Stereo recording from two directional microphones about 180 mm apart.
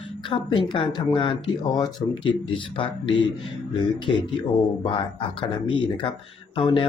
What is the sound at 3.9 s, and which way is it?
Speech, 25° left (ahead or behind).